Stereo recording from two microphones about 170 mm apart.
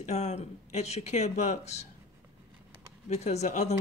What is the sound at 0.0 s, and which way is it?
Speech, 40° left (ahead or behind).